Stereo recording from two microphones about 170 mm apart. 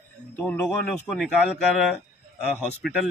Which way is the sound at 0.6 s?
15° left (ahead or behind).